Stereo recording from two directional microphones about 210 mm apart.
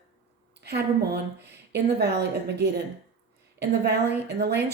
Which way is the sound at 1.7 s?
50° right (ahead or behind).